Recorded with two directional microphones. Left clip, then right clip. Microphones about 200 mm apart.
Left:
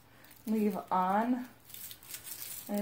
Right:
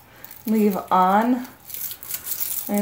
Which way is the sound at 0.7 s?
35° right (ahead or behind).